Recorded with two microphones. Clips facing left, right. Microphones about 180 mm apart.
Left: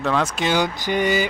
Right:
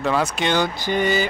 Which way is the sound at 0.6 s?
15° left (ahead or behind).